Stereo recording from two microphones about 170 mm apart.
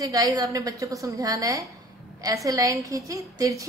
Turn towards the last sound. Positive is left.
turn(degrees=-20)  # may be behind; listen again after turning